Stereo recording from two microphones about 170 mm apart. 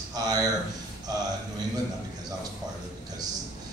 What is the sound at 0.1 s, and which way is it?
Speech, 20° right (ahead or behind).